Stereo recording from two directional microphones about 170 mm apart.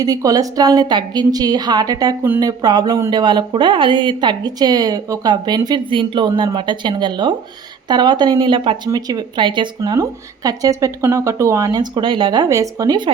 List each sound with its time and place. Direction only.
0.0 s speech: 20° right (ahead or behind)